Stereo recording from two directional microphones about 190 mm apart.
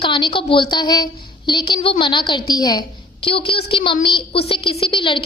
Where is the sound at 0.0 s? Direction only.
25° left (ahead or behind).